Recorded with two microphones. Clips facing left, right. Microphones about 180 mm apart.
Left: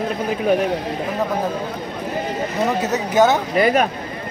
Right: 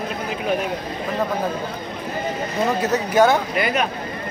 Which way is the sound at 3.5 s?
40° left (ahead or behind).